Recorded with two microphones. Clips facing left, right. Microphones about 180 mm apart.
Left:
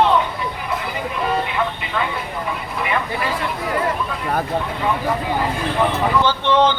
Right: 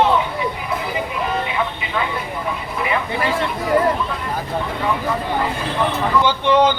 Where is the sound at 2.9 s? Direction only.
Centre (ahead or behind).